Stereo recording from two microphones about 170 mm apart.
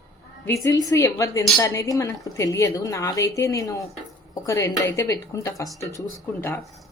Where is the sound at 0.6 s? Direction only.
20° left (ahead or behind).